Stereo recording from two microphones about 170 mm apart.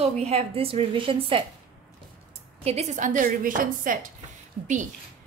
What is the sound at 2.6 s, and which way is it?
A woman's voice, 40° right (ahead or behind).